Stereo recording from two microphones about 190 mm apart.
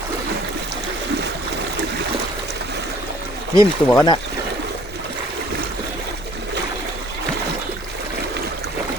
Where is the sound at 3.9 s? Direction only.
25° left (ahead or behind).